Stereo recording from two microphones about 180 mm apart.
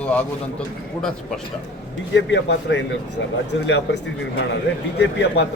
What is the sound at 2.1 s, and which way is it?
Speech, 80° left.